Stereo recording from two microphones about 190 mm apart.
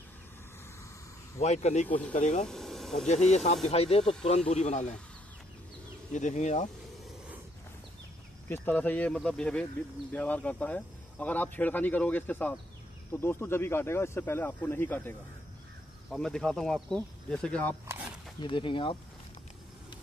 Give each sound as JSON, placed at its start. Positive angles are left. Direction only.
{"t": 1.4, "sound": "speech", "side_deg": 35}
{"t": 2.4, "sound": "speech", "side_deg": 0}
{"t": 3.1, "sound": "speech", "side_deg": 35}
{"t": 6.1, "sound": "speech", "side_deg": 40}
{"t": 8.5, "sound": "speech", "side_deg": 10}
{"t": 17.8, "sound": "a sound", "side_deg": -10}
{"t": 18.4, "sound": "speech", "side_deg": 25}